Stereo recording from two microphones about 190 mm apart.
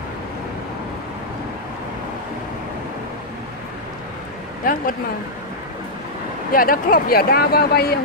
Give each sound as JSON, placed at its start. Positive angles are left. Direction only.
{"t": 4.6, "sound": "speech", "side_deg": 45}
{"t": 6.5, "sound": "speech", "side_deg": 50}